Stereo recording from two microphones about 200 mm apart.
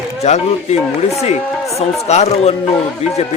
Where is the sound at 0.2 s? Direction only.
35° left (ahead or behind).